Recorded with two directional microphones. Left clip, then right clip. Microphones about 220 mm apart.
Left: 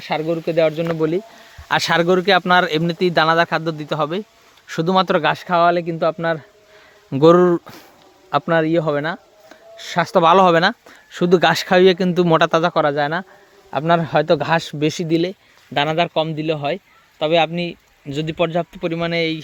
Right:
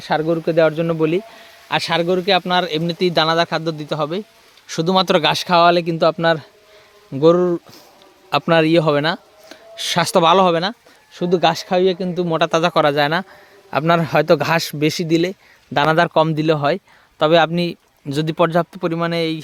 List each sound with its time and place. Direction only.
0.0 s speech: 20° right (ahead or behind)
1.6 s a man's voice: 15° left (ahead or behind); by 6.4 s 25° right (ahead or behind)
7.1 s speech: 20° left (ahead or behind)
8.3 s speech: 15° right (ahead or behind)
10.2 s speech: 10° left (ahead or behind)
11.1 s speech: 25° left (ahead or behind)
12.5 s speech: centre (ahead or behind)
12.7 s speech: 10° right (ahead or behind)
15.7 s a man's voice: 25° right (ahead or behind)